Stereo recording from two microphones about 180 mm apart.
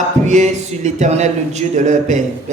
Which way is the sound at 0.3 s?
40° right (ahead or behind).